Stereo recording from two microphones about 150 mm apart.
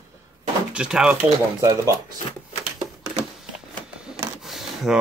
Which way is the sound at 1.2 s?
25° right (ahead or behind).